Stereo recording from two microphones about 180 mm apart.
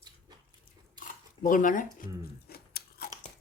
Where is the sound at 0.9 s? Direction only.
50° left (ahead or behind).